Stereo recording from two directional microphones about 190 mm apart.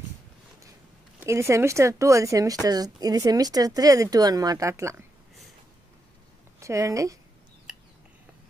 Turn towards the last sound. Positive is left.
turn(degrees=-15)  # may be behind; listen again after turning